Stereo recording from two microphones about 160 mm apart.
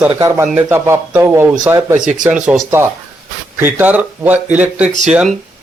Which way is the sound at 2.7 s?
15° right (ahead or behind).